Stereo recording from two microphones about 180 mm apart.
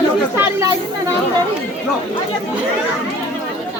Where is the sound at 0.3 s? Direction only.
15° right (ahead or behind).